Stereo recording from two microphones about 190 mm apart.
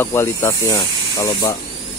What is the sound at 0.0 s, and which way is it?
Speech, 15° left (ahead or behind).